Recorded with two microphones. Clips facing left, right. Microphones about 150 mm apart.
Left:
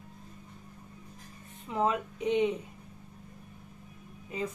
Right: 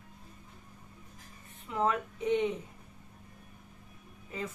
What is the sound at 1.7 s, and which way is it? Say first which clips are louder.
Speech: left 1 dB; 15° left (ahead or behind).